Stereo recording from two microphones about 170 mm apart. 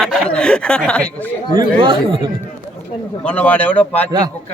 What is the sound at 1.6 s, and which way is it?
Speech, 30° right (ahead or behind).